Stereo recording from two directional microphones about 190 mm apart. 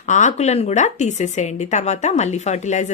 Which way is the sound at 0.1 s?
40° left (ahead or behind).